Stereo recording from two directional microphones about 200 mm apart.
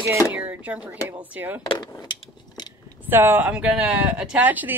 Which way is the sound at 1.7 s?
20° left (ahead or behind).